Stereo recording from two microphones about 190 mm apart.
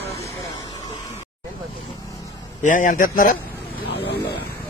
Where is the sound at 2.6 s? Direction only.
45° left (ahead or behind).